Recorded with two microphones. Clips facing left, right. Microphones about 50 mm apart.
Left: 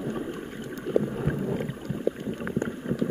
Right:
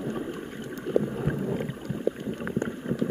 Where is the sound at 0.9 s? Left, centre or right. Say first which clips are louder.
Even; centre.